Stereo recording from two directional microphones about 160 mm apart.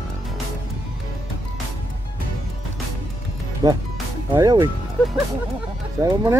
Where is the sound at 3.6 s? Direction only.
25° right (ahead or behind).